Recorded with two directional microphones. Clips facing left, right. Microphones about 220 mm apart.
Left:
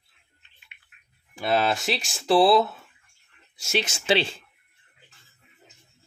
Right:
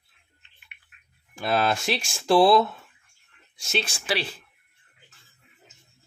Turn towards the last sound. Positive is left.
turn(degrees=25)  # may be behind; listen again after turning